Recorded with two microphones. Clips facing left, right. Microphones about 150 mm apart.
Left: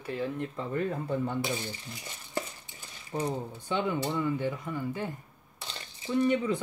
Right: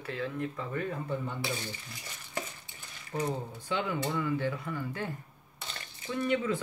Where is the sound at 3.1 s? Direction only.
20° left (ahead or behind).